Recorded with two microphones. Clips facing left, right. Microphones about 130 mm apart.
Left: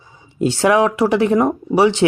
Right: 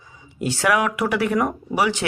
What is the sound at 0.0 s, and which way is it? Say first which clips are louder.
Speech: left 8 dB; 30° left (ahead or behind).